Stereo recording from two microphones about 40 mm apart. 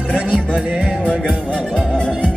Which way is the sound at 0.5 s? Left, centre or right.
Right.